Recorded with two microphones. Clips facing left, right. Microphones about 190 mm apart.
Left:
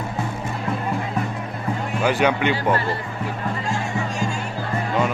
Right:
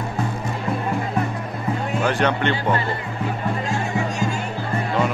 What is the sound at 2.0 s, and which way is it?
Speech, 5° left (ahead or behind).